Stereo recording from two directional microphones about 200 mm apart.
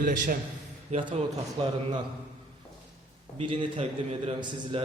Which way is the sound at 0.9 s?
25° right (ahead or behind).